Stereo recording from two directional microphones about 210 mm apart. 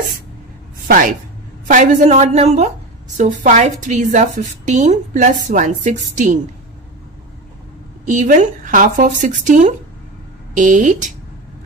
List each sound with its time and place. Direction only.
0.8 s a woman's voice: 40° right (ahead or behind)
8.0 s a woman's voice: 35° right (ahead or behind)